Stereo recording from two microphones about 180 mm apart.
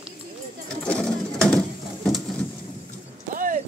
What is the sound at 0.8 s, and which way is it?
Sewing machine, 5° left (ahead or behind).